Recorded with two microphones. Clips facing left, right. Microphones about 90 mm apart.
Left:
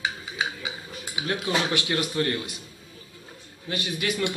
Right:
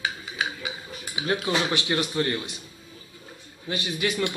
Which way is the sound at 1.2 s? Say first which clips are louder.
Right 1 dB; centre (ahead or behind).